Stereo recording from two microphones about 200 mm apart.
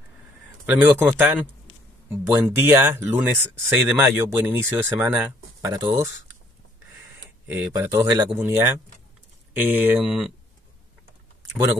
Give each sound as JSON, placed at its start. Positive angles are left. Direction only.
{"t": 0.7, "sound": "speech", "side_deg": -10}
{"t": 7.4, "sound": "speech", "side_deg": -10}
{"t": 8.1, "sound": "speech", "side_deg": -20}
{"t": 8.4, "sound": "speech", "side_deg": -10}